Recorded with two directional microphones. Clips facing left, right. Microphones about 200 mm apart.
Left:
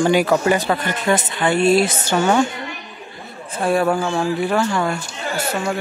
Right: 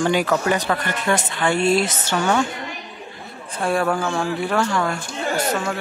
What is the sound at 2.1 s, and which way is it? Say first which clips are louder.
Speech: left 4 dB; 25° left (ahead or behind).